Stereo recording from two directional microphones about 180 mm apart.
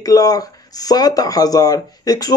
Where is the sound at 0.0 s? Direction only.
20° left (ahead or behind).